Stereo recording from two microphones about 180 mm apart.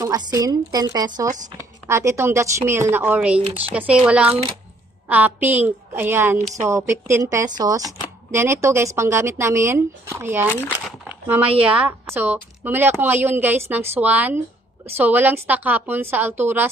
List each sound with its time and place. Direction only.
0.0 s a woman's voice: 20° right (ahead or behind)